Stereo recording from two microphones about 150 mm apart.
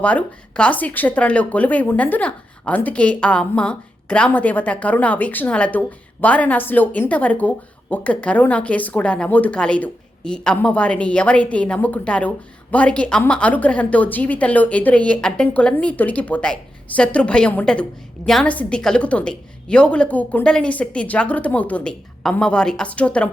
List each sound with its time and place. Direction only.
0.0 s a woman's voice: 10° left (ahead or behind)